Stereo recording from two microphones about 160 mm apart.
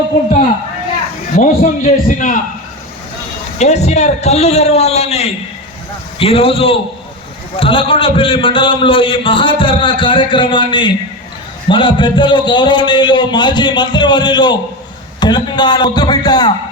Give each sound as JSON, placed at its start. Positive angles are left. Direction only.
{"t": 1.4, "sound": "a man's voice", "side_deg": 50}
{"t": 3.6, "sound": "a man's voice", "side_deg": 45}